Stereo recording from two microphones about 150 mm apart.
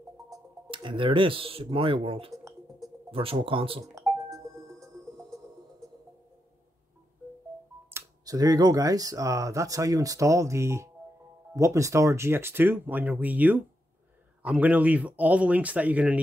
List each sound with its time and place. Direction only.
0.3 s speech: 35° right (ahead or behind)
4.1 s a sound: 5° left (ahead or behind)
7.9 s speech: 25° right (ahead or behind)